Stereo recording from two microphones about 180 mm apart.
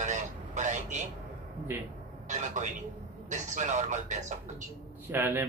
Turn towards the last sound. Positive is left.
turn(degrees=-10)  # may be behind; listen again after turning